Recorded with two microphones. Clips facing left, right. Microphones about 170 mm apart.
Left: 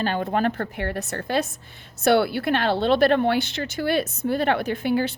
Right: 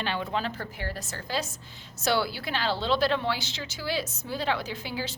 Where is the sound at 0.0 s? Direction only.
45° left (ahead or behind).